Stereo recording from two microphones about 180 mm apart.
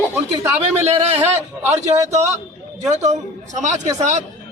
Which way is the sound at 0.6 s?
35° right (ahead or behind).